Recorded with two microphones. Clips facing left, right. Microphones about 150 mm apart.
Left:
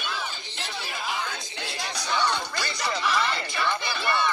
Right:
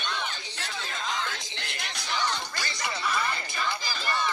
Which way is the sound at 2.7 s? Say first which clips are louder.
Left 4 dB; 75° left (ahead or behind).